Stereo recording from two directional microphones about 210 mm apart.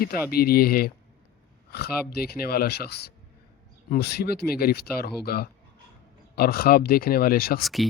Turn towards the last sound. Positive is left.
turn(degrees=0)  # may be behind; listen again after turning